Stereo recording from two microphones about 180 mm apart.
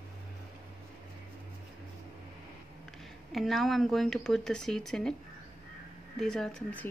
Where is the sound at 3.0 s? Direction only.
Centre (ahead or behind).